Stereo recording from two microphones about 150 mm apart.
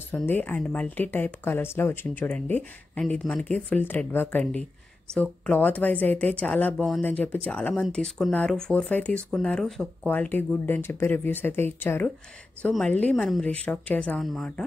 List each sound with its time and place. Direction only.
0.1 s speech: 10° left (ahead or behind)